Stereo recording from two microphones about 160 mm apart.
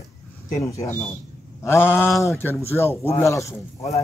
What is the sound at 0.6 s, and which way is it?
A man's voice, 20° left (ahead or behind).